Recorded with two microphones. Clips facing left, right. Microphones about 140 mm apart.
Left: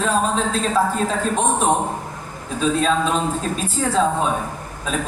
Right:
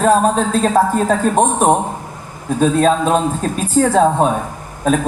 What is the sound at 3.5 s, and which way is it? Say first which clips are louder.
Speech: right 9 dB; 50° right (ahead or behind).